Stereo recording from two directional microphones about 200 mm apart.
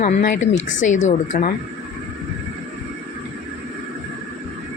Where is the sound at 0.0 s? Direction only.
45° left (ahead or behind).